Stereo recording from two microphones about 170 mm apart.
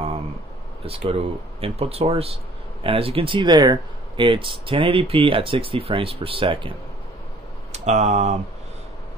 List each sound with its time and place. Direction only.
0.8 s speech: 35° right (ahead or behind)
7.7 s speech: 40° right (ahead or behind)